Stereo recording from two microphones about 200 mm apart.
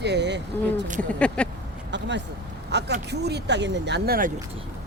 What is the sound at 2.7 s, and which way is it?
Speech, 55° right (ahead or behind).